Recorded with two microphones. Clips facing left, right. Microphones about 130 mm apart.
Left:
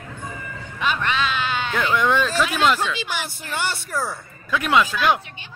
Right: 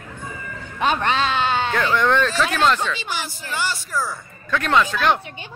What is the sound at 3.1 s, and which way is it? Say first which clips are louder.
Speech: even; 55° left (ahead or behind).